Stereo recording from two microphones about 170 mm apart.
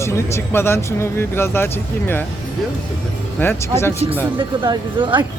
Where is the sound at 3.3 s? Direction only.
15° left (ahead or behind).